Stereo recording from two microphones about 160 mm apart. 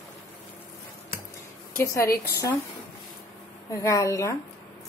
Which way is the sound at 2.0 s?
70° left (ahead or behind).